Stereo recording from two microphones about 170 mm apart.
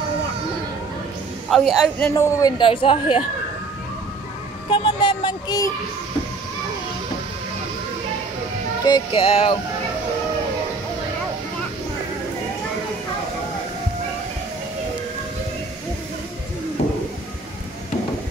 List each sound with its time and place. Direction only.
1.5 s a woman's voice: centre (ahead or behind)
2.0 s a man's voice: 15° left (ahead or behind)
2.6 s a woman's voice: 30° left (ahead or behind)
4.6 s speech: 30° left (ahead or behind)
8.8 s a sound: 30° left (ahead or behind)